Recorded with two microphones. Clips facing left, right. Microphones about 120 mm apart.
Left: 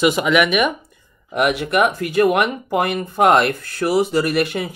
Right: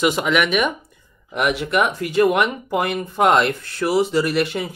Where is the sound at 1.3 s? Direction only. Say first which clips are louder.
Left 2 dB; 50° left (ahead or behind).